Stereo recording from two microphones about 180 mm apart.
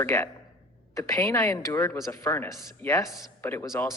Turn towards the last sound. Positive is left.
turn(degrees=15)  # may be behind; listen again after turning